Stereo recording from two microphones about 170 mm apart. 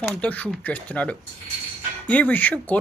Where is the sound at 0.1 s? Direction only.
10° left (ahead or behind).